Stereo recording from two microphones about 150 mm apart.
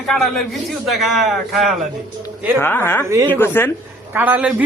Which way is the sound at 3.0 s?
20° right (ahead or behind).